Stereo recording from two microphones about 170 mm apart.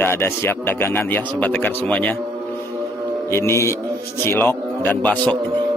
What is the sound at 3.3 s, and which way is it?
Speech, 15° left (ahead or behind).